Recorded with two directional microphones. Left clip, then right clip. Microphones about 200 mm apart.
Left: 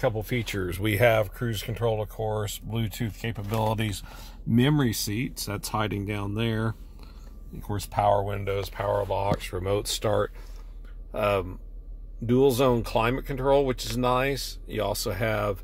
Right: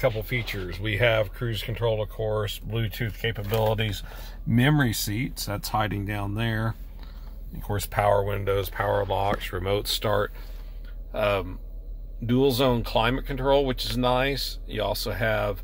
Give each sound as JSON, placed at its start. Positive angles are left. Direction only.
{"t": 0.2, "sound": "speech", "side_deg": 60}
{"t": 0.8, "sound": "speech", "side_deg": 35}